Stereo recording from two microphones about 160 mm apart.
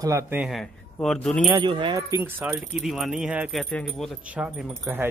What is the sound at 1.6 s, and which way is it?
Speech, 30° right (ahead or behind).